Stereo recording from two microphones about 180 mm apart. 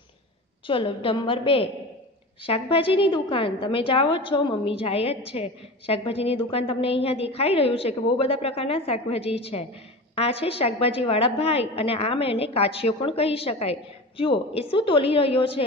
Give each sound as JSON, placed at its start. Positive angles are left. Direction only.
{"t": 0.7, "sound": "a woman's voice", "side_deg": 30}